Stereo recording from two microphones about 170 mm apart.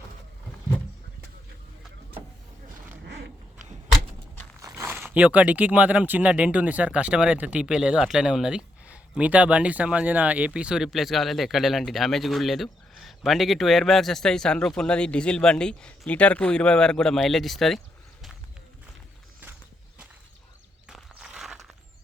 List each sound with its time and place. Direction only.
3.0 s creak: 75° right (ahead or behind)
4.6 s speech: 15° right (ahead or behind); by 17.7 s centre (ahead or behind)
20.9 s a sound: centre (ahead or behind)